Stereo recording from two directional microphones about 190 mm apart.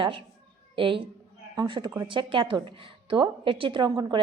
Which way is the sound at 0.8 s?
25° right (ahead or behind).